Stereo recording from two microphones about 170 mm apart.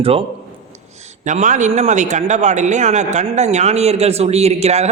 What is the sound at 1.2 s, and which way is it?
A man's voice, 45° right (ahead or behind).